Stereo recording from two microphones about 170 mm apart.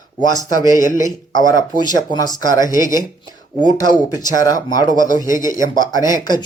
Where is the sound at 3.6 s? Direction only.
25° left (ahead or behind).